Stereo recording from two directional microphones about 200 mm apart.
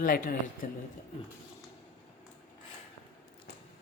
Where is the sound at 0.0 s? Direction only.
45° left (ahead or behind).